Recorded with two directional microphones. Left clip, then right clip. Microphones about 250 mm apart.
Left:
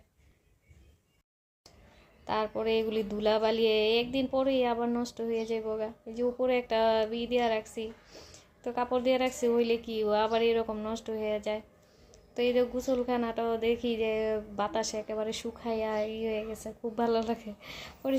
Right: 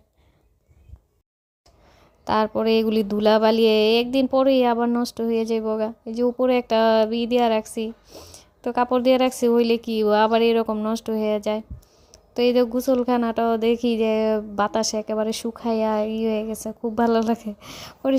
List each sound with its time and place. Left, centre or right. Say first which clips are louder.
2.2 s speech: right 10 dB; right